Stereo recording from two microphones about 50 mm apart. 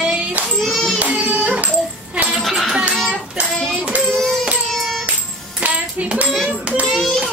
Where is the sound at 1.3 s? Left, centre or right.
Right.